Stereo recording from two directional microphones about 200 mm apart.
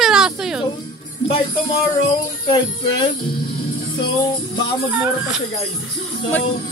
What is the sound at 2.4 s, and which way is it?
Speech, 25° left (ahead or behind).